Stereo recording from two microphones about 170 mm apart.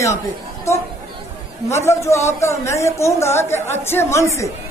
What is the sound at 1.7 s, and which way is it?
Speech, 15° left (ahead or behind).